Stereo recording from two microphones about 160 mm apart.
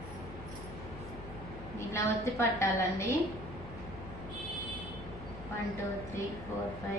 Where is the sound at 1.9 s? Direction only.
15° left (ahead or behind).